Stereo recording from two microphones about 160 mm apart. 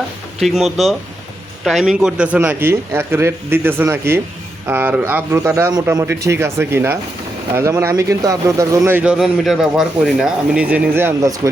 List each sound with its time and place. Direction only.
0.3 s speech: centre (ahead or behind); by 11.3 s 15° right (ahead or behind)